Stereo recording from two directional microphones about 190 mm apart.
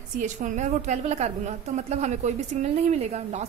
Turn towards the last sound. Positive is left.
turn(degrees=-35)  # may be behind; listen again after turning